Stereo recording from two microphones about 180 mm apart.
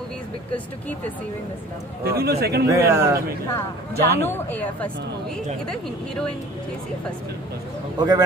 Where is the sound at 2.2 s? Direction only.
60° right (ahead or behind).